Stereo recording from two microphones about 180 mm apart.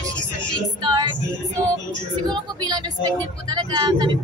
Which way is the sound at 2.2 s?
25° right (ahead or behind).